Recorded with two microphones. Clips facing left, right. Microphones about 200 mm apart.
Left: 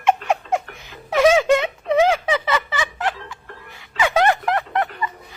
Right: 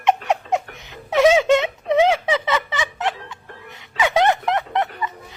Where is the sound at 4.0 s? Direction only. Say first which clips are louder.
Even; 20° right (ahead or behind).